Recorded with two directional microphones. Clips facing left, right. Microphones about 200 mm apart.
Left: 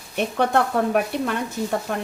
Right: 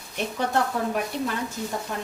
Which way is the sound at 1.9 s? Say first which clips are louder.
Left 5 dB; 70° left (ahead or behind).